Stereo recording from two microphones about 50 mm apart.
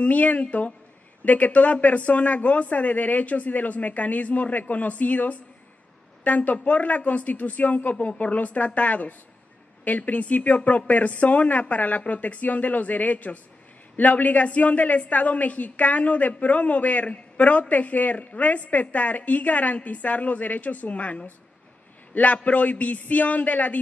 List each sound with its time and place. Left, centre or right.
0.0 s a woman's voice: left